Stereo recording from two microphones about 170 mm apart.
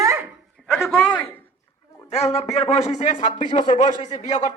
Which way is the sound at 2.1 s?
40° left (ahead or behind).